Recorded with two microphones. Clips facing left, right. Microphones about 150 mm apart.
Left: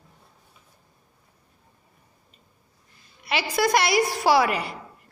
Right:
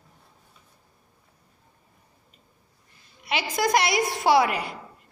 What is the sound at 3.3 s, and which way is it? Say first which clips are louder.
A woman's voice: left 1 dB; 20° right (ahead or behind).